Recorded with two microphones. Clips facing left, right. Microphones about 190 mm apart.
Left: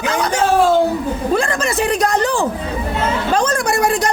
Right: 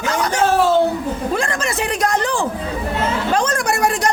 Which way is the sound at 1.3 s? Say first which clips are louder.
Left 7 dB; 35° left (ahead or behind).